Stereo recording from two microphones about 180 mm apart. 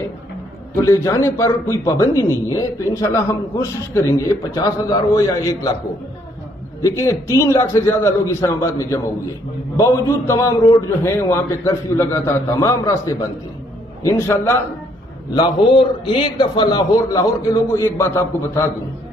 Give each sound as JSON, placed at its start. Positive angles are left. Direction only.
{"t": 0.8, "sound": "a man's voice", "side_deg": 15}
{"t": 6.8, "sound": "a man's voice", "side_deg": 15}
{"t": 15.3, "sound": "a man's voice", "side_deg": 25}